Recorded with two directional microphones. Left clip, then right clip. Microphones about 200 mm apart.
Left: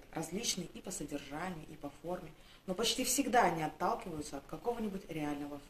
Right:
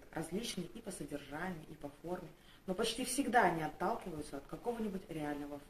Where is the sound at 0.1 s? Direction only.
15° left (ahead or behind).